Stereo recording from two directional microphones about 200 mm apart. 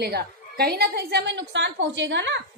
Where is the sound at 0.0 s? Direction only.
55° right (ahead or behind).